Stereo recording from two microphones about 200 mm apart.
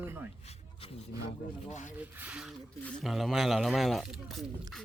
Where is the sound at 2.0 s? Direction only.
5° right (ahead or behind).